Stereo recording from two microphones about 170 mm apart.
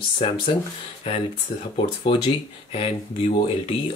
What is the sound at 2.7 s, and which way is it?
Speech, 35° left (ahead or behind).